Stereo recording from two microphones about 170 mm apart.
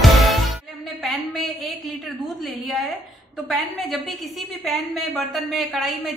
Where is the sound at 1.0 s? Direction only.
Centre (ahead or behind).